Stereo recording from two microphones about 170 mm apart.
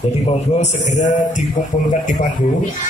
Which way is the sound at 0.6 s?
40° left (ahead or behind).